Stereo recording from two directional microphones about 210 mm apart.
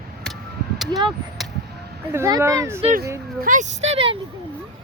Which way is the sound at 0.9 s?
20° right (ahead or behind).